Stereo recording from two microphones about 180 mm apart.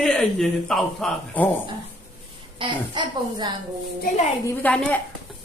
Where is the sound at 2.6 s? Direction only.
25° right (ahead or behind).